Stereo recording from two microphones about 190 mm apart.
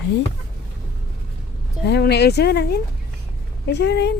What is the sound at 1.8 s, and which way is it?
Speech, 60° left (ahead or behind).